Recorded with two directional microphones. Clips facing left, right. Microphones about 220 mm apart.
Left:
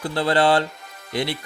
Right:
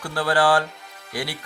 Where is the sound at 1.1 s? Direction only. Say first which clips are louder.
Left 5 dB; 25° left (ahead or behind).